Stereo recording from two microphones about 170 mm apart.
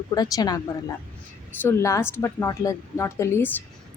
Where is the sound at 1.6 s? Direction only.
15° left (ahead or behind).